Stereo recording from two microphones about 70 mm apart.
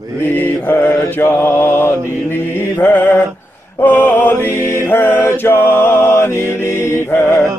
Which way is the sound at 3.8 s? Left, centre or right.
Left.